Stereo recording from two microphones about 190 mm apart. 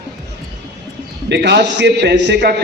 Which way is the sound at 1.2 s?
60° right (ahead or behind).